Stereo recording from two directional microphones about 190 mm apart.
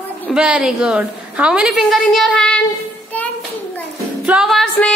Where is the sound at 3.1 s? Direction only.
10° left (ahead or behind).